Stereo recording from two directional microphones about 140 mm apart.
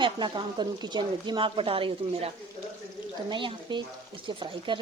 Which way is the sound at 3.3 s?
35° right (ahead or behind).